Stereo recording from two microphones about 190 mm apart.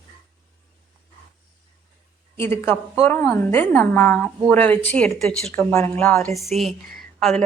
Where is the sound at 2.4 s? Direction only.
10° left (ahead or behind).